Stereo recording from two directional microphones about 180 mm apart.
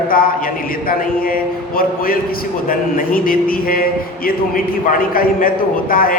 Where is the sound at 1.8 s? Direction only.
55° left (ahead or behind).